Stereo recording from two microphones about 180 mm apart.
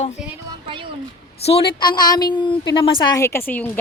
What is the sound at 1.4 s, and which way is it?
Speech, 35° left (ahead or behind).